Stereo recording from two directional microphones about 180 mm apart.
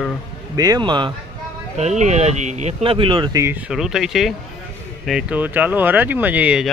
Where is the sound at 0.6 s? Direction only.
25° right (ahead or behind).